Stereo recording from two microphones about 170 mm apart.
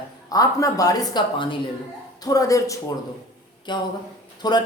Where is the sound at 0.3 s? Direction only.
20° left (ahead or behind).